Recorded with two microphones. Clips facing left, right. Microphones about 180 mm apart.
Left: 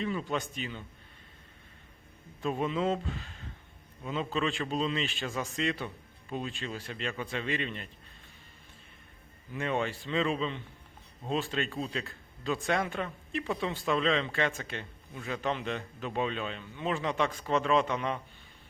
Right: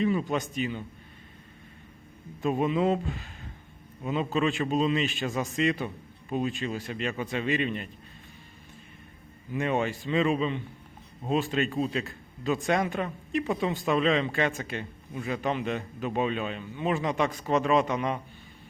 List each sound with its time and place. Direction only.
0.0 s a man's voice: 15° right (ahead or behind)
2.4 s a man's voice: 15° right (ahead or behind)
9.5 s a man's voice: 15° right (ahead or behind)